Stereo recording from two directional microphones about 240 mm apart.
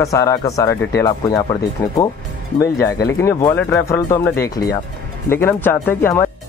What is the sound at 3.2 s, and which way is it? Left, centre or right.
Speech, centre.